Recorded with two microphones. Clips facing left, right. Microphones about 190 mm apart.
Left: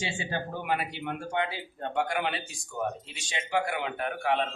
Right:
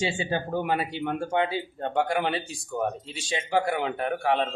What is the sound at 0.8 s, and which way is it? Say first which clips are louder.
A man's voice: right 6 dB; 30° right (ahead or behind).